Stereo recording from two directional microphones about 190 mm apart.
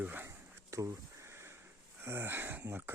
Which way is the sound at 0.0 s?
10° right (ahead or behind).